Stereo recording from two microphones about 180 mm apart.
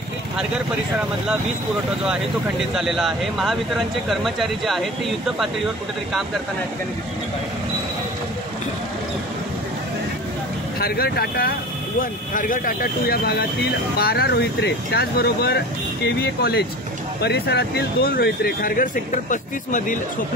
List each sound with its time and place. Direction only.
2.7 s speech: centre (ahead or behind)
10.8 s speech: 55° left (ahead or behind)